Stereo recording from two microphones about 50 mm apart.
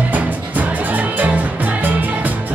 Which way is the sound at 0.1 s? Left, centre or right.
Right.